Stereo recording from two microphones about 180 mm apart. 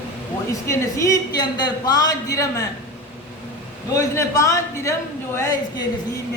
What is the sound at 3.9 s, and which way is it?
A man's voice, 15° left (ahead or behind).